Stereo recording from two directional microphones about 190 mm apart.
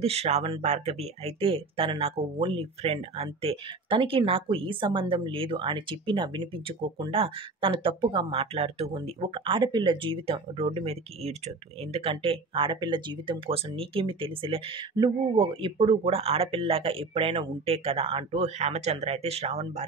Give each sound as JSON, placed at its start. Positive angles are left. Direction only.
{"t": 0.0, "sound": "speech", "side_deg": -35}